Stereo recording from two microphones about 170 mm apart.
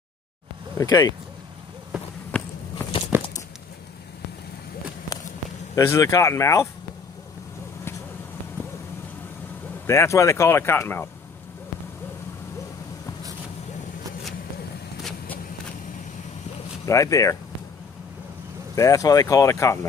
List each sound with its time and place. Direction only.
0.7 s speech: 20° left (ahead or behind)
2.3 s walk: 5° left (ahead or behind)
3.1 s a sound: 15° right (ahead or behind)
5.8 s speech: 20° left (ahead or behind)
9.8 s speech: 15° left (ahead or behind)
16.8 s speech: 20° left (ahead or behind)
18.8 s speech: 20° left (ahead or behind)